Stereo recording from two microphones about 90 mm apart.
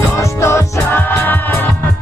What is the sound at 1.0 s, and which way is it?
Music, 20° left (ahead or behind).